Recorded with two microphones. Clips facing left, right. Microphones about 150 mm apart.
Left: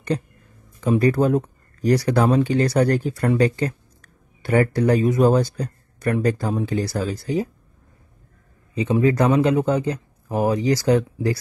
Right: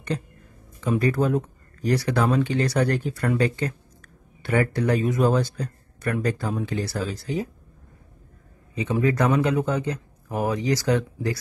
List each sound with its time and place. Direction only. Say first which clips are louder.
0.7 s speech: left 4 dB; 40° left (ahead or behind)
8.7 s speech: left 4 dB; 30° left (ahead or behind)